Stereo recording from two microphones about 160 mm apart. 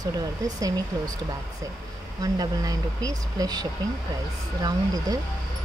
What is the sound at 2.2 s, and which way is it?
Speech, 20° right (ahead or behind).